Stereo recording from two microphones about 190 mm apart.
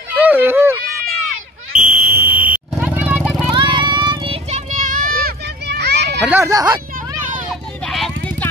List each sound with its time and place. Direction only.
0.1 s a sound: 10° right (ahead or behind)
1.8 s fire alarm: 10° right (ahead or behind)
2.8 s vehicle: 10° right (ahead or behind)
3.5 s vehicle: 25° right (ahead or behind); by 6.2 s 60° right (ahead or behind)
6.2 s speech: 10° right (ahead or behind)
6.5 s speech: 20° right (ahead or behind)
7.8 s vehicle: 5° left (ahead or behind)